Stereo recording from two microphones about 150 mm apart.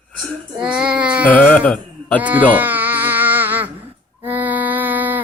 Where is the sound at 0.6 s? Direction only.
5° right (ahead or behind).